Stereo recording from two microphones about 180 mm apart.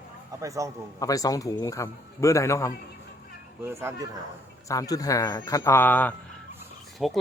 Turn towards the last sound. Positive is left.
turn(degrees=0)  # may be behind; listen again after turning